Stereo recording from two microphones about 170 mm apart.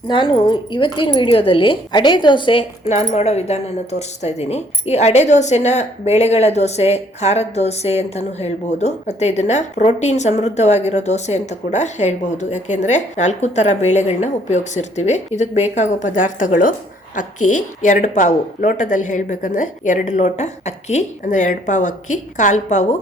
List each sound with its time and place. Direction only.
0.1 s speech: 30° left (ahead or behind)
2.9 s a woman's voice: 40° left (ahead or behind)